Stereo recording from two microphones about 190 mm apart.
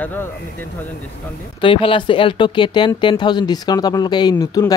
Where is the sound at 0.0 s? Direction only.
10° left (ahead or behind).